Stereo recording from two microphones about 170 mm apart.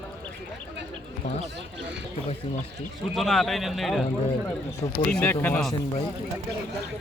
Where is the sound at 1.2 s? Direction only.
80° left.